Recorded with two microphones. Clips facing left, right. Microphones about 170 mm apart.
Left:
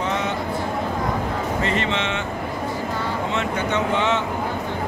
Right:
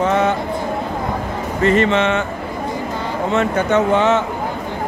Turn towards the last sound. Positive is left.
turn(degrees=-45)  # may be behind; listen again after turning